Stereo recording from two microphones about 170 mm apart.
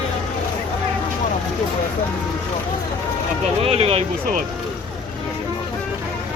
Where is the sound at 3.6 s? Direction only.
35° right (ahead or behind).